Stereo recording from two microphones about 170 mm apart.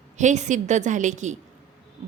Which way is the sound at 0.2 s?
45° right (ahead or behind).